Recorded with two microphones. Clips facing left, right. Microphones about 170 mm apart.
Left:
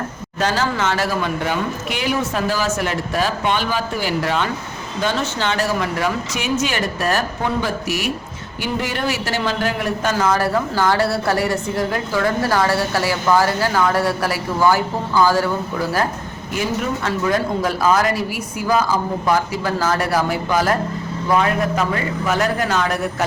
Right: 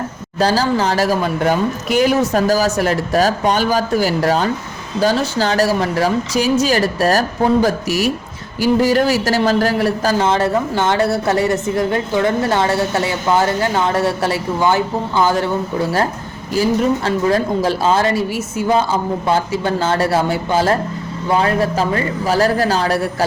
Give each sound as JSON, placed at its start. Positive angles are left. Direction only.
{"t": 0.3, "sound": "a man's voice", "side_deg": -35}
{"t": 17.1, "sound": "a man's voice", "side_deg": -30}